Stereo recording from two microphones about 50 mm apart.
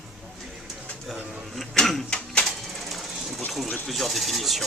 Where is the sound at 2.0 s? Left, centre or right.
Centre.